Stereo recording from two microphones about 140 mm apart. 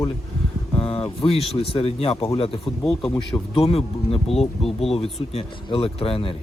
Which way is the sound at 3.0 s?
20° left (ahead or behind).